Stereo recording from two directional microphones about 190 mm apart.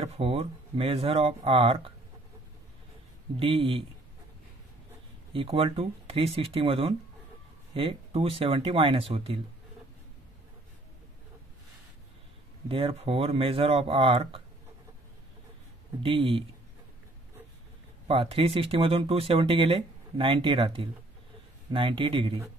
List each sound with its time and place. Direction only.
0.0 s speech: 30° right (ahead or behind)
3.3 s speech: 30° right (ahead or behind)
5.3 s speech: 30° right (ahead or behind)
12.6 s speech: 30° right (ahead or behind)
16.0 s speech: 25° right (ahead or behind)
18.0 s speech: 30° right (ahead or behind)